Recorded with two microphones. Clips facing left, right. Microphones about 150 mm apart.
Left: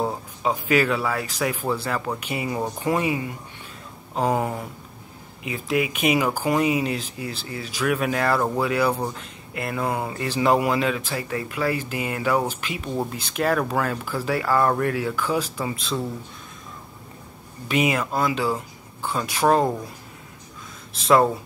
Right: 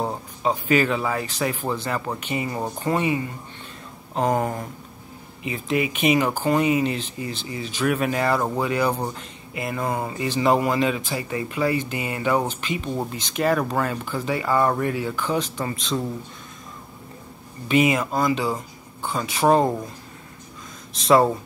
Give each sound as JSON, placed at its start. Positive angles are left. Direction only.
{"t": 0.0, "sound": "speech", "side_deg": 0}
{"t": 17.6, "sound": "speech", "side_deg": 0}
{"t": 21.0, "sound": "speech", "side_deg": 0}